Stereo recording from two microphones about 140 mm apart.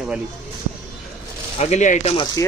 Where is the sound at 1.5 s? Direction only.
55° left (ahead or behind).